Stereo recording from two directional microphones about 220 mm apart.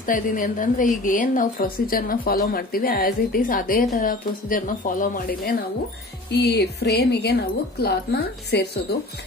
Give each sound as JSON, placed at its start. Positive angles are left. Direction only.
{"t": 0.0, "sound": "speech", "side_deg": 40}